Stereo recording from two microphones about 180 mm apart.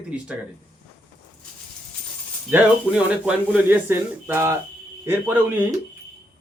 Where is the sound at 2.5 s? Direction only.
5° right (ahead or behind).